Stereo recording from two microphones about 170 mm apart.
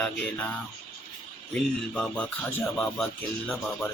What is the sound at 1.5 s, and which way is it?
Speech, 5° left (ahead or behind).